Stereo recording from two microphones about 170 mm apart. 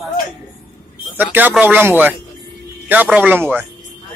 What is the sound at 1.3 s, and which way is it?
Speech, 10° right (ahead or behind).